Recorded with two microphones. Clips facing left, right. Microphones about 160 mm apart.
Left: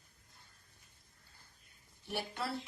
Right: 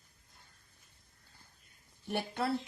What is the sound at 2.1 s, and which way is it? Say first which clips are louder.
Speech: right 5 dB; 55° right (ahead or behind).